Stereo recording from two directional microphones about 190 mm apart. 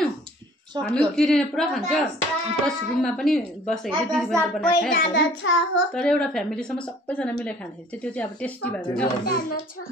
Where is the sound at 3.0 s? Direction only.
Centre (ahead or behind).